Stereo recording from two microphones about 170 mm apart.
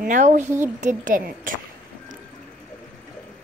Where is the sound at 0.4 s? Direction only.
15° right (ahead or behind).